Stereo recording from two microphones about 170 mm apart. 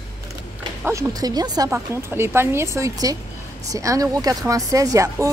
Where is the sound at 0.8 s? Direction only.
20° right (ahead or behind).